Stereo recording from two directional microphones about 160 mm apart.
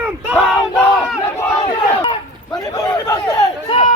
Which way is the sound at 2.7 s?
25° left (ahead or behind).